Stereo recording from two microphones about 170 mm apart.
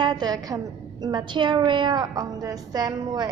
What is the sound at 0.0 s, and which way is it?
A woman's voice, 25° right (ahead or behind).